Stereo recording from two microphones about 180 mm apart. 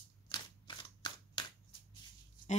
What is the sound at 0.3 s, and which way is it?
Scissors, 25° left (ahead or behind).